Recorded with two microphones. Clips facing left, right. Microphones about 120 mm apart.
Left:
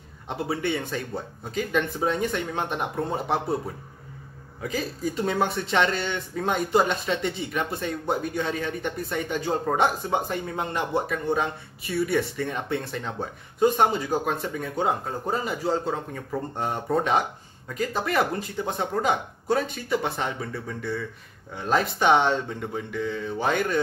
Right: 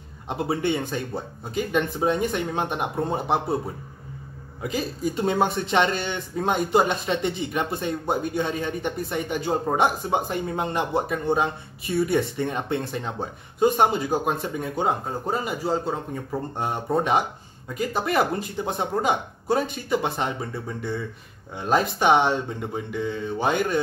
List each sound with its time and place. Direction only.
0.3 s speech: 25° right (ahead or behind)
4.6 s speech: 20° right (ahead or behind)